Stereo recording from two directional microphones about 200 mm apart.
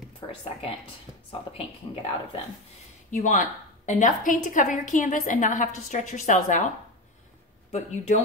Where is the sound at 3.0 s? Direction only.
40° left (ahead or behind).